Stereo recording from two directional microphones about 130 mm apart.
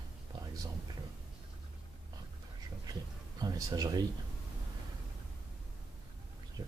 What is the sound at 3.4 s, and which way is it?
Speech, 30° right (ahead or behind).